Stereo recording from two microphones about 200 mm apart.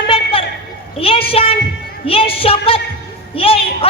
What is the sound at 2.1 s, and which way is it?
Music, 25° left (ahead or behind).